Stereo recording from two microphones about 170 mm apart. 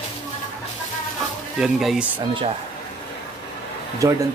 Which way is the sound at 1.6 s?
Centre (ahead or behind).